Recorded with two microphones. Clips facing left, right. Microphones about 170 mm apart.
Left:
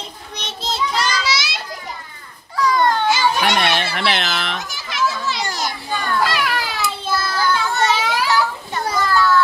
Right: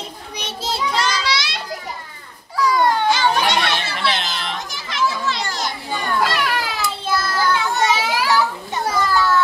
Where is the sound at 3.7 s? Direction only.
65° left (ahead or behind).